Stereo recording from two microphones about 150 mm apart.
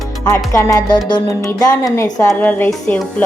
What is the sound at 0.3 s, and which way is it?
Speech, 25° left (ahead or behind).